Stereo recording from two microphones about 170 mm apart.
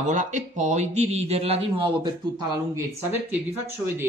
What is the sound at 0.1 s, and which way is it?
A man's voice, 45° right (ahead or behind).